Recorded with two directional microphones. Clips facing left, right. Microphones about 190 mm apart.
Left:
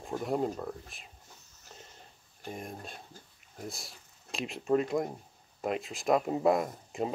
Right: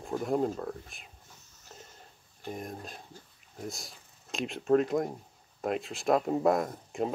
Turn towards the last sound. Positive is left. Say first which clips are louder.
# right 2 dB
turn(degrees=0)  # may be behind; listen again after turning